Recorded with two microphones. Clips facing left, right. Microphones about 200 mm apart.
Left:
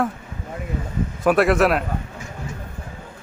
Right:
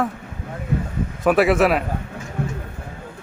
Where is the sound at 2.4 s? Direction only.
60° right (ahead or behind).